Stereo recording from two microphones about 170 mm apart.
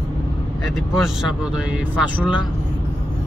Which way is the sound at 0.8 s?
Centre (ahead or behind).